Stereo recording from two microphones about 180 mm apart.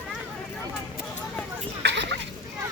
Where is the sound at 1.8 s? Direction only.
75° right (ahead or behind).